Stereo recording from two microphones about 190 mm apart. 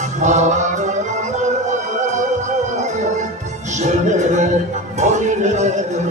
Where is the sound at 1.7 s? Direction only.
40° right (ahead or behind).